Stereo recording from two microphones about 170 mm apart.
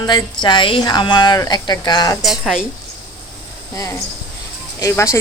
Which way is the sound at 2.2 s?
Centre (ahead or behind).